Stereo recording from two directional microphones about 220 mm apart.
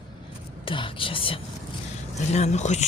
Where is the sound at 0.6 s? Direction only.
25° left (ahead or behind).